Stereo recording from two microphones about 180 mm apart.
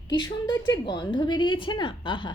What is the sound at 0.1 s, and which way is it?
A woman's voice, 25° left (ahead or behind).